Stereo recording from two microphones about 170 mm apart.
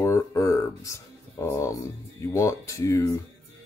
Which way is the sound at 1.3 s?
15° left (ahead or behind).